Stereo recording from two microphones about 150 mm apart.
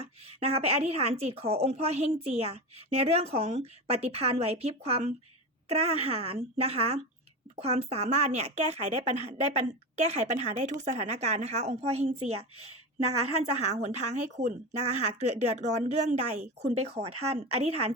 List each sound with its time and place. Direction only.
0.0 s speech: 45° right (ahead or behind)